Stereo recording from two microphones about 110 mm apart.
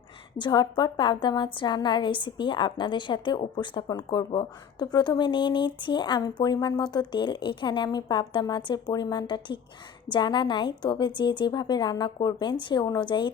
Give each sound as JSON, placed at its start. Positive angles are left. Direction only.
{"t": 0.3, "sound": "a woman's voice", "side_deg": 45}